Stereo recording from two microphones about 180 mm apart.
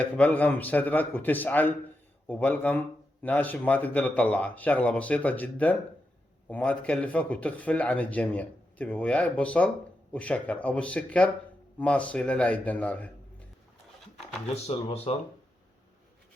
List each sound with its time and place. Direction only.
0.0 s speech: 10° left (ahead or behind)
14.5 s speech: 35° left (ahead or behind)